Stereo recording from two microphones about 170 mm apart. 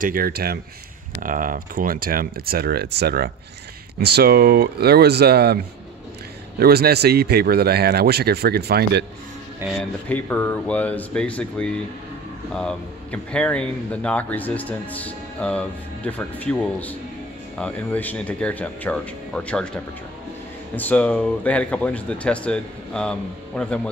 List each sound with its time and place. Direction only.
0.0 s speech: 60° right (ahead or behind)
1.2 s speech: 55° right (ahead or behind); by 5.6 s 70° right (ahead or behind)
6.6 s speech: 65° right (ahead or behind)
9.8 s speech: 10° left (ahead or behind)
20.7 s speech: 10° left (ahead or behind)